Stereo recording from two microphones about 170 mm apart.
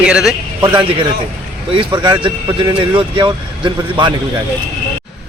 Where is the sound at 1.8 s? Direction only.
25° right (ahead or behind).